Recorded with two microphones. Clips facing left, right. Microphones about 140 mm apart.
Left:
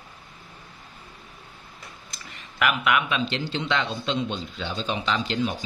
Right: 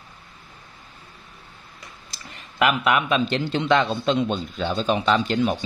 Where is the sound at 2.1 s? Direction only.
30° right (ahead or behind); by 5.0 s 50° right (ahead or behind).